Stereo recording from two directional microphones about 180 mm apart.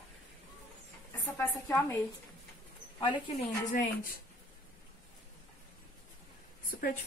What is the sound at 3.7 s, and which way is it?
Speech, 50° left (ahead or behind).